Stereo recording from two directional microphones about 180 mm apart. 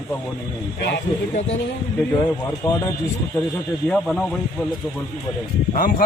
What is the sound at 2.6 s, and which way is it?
Speech, 15° left (ahead or behind).